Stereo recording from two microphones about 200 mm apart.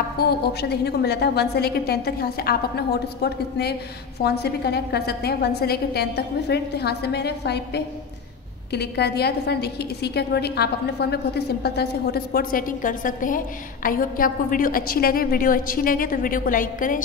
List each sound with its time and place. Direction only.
0.2 s a woman's voice: 50° left (ahead or behind)